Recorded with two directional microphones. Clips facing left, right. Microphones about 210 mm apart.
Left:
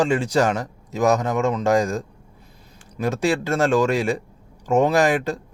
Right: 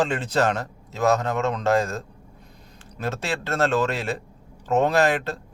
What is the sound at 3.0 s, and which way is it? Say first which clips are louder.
Speech: left 7 dB; 15° left (ahead or behind).